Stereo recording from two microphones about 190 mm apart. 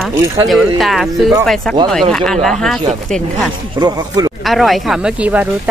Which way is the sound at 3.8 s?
20° right (ahead or behind).